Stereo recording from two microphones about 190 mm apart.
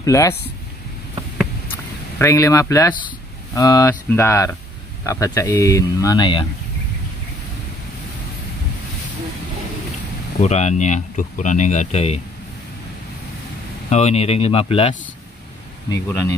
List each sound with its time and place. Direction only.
0.0 s speech: 15° left (ahead or behind)
2.1 s speech: 15° left (ahead or behind)
10.4 s speech: 35° left (ahead or behind)
13.8 s speech: 35° left (ahead or behind)